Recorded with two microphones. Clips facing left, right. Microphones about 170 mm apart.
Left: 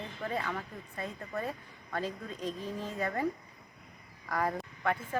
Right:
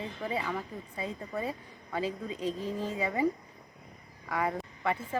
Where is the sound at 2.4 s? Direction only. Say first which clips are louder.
Right 3 dB; 30° right (ahead or behind).